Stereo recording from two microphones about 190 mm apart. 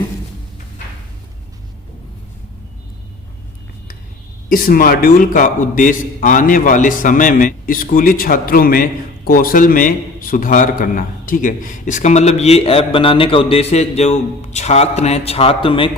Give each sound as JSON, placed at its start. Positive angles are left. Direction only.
{"t": 4.4, "sound": "a man's voice", "side_deg": 50}